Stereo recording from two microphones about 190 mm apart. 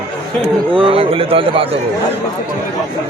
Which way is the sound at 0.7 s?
30° right (ahead or behind).